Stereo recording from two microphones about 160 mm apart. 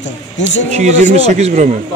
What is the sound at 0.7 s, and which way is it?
Speech, 45° right (ahead or behind).